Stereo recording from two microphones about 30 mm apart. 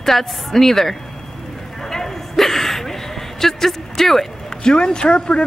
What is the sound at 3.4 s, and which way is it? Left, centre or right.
Speech, centre.